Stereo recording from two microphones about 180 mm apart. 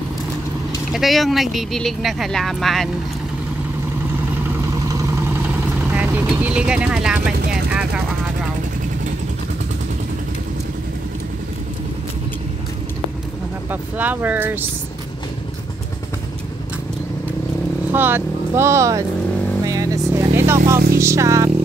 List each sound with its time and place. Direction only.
0.9 s speech: centre (ahead or behind)
5.9 s speech: 10° right (ahead or behind)
13.7 s speech: 10° right (ahead or behind)
17.9 s speech: 10° right (ahead or behind)
19.6 s vehicle: 20° right (ahead or behind)
21.0 s speech: 15° right (ahead or behind)